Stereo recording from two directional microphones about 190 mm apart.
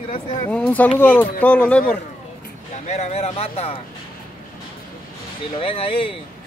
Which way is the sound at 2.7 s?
35° left (ahead or behind).